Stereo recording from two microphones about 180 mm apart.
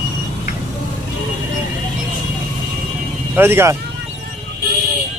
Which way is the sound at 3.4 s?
10° right (ahead or behind).